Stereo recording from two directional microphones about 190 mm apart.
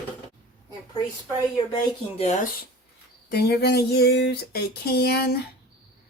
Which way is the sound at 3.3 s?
60° left (ahead or behind).